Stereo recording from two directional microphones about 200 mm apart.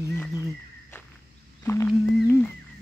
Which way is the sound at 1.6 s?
10° left (ahead or behind).